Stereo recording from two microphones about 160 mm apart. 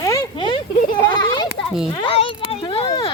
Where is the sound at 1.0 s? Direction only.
25° left (ahead or behind).